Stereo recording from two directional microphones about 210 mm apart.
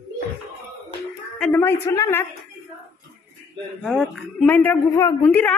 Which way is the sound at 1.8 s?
15° left (ahead or behind).